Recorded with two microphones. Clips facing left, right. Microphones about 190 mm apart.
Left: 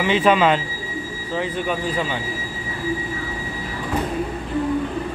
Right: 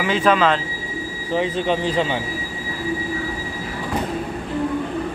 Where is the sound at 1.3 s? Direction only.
25° right (ahead or behind).